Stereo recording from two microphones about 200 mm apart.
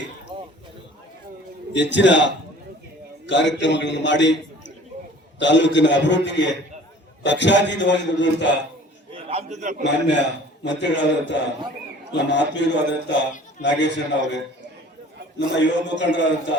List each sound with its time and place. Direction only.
0.3 s a sound: 20° right (ahead or behind)
1.7 s a man's voice: 60° left (ahead or behind)
5.4 s a man's voice: 65° left (ahead or behind)
9.3 s a man's voice: 35° right (ahead or behind)
10.6 s a man's voice: 60° left (ahead or behind)
15.5 s a man's voice: 60° left (ahead or behind)